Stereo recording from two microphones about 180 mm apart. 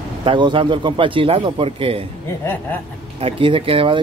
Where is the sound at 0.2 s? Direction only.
25° right (ahead or behind).